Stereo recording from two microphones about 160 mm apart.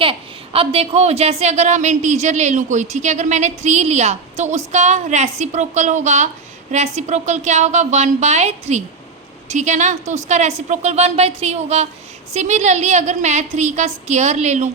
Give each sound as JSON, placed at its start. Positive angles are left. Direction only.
{"t": 0.0, "sound": "a woman's voice", "side_deg": -35}